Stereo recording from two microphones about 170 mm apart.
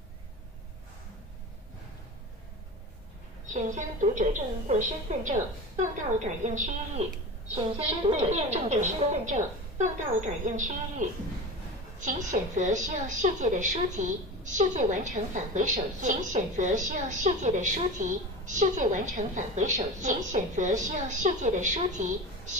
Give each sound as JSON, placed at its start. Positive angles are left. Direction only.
{"t": 3.4, "sound": "a woman's voice", "side_deg": -45}
{"t": 7.5, "sound": "a woman's voice", "side_deg": -35}